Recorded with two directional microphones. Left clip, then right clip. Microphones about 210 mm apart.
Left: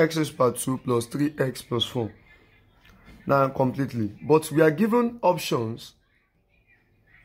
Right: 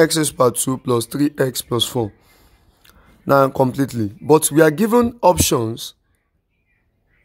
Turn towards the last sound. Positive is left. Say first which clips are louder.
# right 8 dB
turn(degrees=-45)  # may be behind; listen again after turning